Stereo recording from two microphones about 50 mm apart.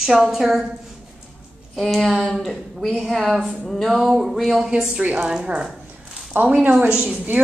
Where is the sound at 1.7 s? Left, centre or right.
Centre.